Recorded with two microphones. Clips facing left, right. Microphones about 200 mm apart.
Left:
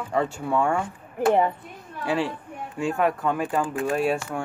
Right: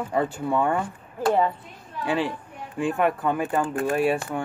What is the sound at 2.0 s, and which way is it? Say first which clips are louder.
Speech: even; centre (ahead or behind).